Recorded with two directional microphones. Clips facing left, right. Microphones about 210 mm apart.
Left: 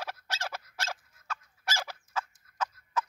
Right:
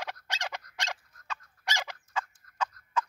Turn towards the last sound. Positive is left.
turn(degrees=5)  # may be behind; listen again after turning